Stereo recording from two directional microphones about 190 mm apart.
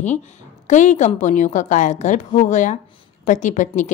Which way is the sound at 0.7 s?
40° left (ahead or behind).